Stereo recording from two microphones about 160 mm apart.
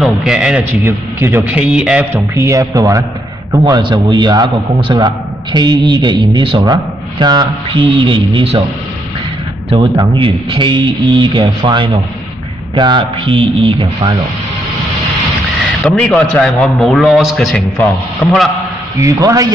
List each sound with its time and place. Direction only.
0.0 s a man's voice: 5° right (ahead or behind); by 8.6 s 35° right (ahead or behind)
9.7 s speech: 30° right (ahead or behind)
15.8 s a man's voice: 5° left (ahead or behind)
18.9 s a man's voice: 20° right (ahead or behind)